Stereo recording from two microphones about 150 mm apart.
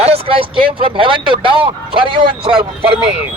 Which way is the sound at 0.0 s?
40° right (ahead or behind).